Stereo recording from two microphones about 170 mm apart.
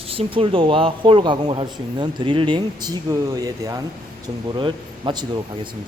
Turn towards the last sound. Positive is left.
turn(degrees=-25)  # may be behind; listen again after turning